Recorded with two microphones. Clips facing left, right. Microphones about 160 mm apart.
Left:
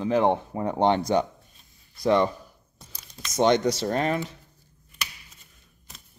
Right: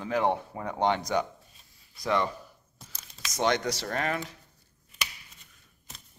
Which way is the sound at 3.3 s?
20° left (ahead or behind).